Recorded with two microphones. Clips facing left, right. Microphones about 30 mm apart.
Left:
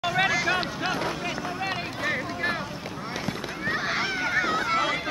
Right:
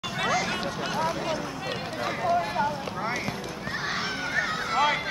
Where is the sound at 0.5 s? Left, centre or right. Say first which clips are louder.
Left 4 dB; left.